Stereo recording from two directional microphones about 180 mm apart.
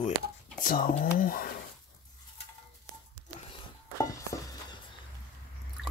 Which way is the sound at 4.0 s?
20° left (ahead or behind).